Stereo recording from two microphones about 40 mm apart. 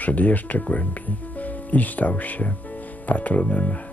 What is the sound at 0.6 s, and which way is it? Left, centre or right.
Music, left.